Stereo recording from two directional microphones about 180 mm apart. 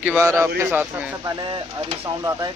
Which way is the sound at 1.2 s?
25° right (ahead or behind).